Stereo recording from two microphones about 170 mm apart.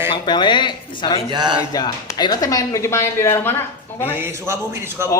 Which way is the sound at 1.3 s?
25° right (ahead or behind).